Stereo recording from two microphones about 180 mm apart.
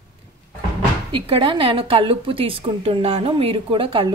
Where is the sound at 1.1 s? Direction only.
30° right (ahead or behind).